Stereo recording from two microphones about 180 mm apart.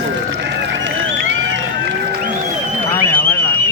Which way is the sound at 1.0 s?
90° right.